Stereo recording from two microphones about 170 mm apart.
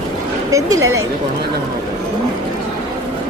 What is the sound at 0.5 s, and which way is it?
Speech, 20° right (ahead or behind).